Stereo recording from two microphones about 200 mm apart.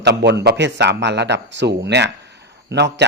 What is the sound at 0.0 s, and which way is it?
Speech, 60° right (ahead or behind).